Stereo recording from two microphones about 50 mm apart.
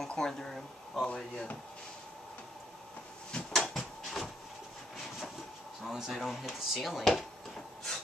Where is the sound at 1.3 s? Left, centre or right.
Left.